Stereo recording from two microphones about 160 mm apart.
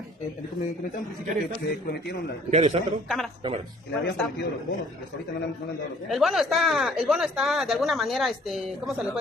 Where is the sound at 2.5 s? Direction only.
45° right (ahead or behind).